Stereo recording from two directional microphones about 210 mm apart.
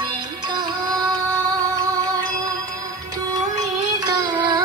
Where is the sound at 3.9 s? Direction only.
20° right (ahead or behind).